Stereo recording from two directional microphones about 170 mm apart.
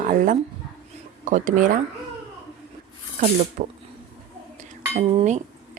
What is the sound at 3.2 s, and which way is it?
Speech, 45° right (ahead or behind).